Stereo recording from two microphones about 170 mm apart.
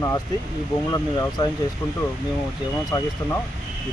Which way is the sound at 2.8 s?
20° left (ahead or behind).